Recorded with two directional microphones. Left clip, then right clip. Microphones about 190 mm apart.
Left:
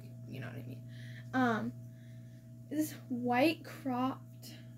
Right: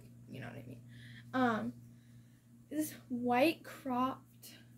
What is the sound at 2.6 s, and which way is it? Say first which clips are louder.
Speech: left 3 dB; 10° right (ahead or behind).